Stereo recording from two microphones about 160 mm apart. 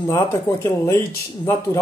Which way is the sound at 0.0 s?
20° left (ahead or behind).